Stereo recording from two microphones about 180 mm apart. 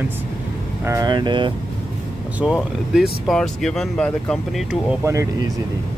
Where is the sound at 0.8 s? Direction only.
20° right (ahead or behind).